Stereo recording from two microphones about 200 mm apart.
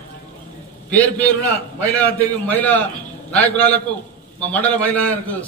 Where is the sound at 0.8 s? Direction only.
5° left (ahead or behind).